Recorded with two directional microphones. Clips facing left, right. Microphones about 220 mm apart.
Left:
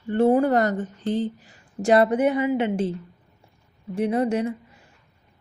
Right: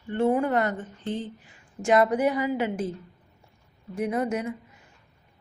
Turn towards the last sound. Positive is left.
turn(degrees=30)  # may be behind; listen again after turning